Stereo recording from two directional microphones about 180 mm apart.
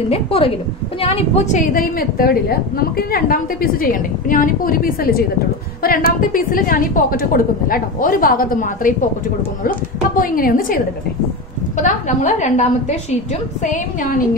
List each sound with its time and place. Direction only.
0.1 s a woman's voice: 30° left (ahead or behind)